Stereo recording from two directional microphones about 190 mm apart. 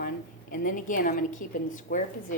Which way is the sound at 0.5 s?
45° left (ahead or behind).